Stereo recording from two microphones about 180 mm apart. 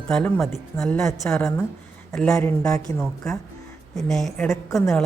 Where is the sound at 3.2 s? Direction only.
5° left (ahead or behind).